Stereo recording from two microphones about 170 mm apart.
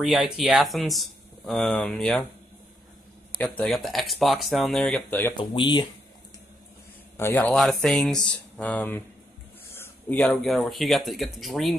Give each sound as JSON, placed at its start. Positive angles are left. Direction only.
{"t": 0.0, "sound": "speech", "side_deg": -5}
{"t": 3.3, "sound": "speech", "side_deg": 10}
{"t": 5.3, "sound": "speech", "side_deg": 30}
{"t": 7.2, "sound": "speech", "side_deg": 15}
{"t": 7.5, "sound": "speech", "side_deg": 0}